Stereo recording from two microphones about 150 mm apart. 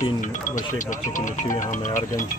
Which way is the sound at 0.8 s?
60° left (ahead or behind).